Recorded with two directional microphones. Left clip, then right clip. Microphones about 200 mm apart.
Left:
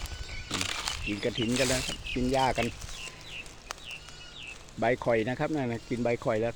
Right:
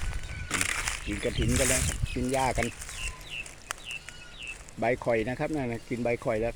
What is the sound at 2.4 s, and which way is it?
Speech, 5° left (ahead or behind).